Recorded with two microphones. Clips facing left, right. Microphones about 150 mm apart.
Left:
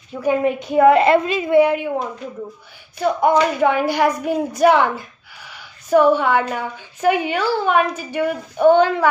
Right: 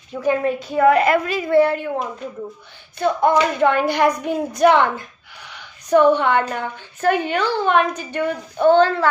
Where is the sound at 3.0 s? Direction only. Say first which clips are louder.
Left 1 dB; 10° left (ahead or behind).